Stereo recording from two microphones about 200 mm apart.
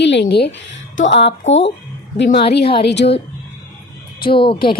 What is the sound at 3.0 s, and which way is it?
Speech, 40° left (ahead or behind).